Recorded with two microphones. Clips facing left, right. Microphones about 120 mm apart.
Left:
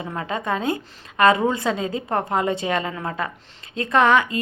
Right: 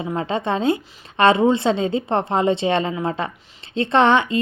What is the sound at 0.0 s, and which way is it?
Speech, 25° right (ahead or behind).